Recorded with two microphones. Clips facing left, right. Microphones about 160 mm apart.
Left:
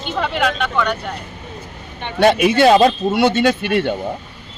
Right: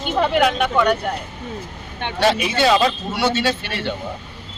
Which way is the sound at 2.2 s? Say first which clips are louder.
Left 6 dB; 55° left (ahead or behind).